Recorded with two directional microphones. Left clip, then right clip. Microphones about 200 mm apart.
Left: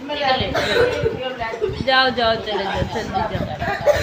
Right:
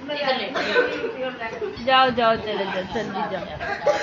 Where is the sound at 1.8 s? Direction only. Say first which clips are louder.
Left 1 dB; centre (ahead or behind).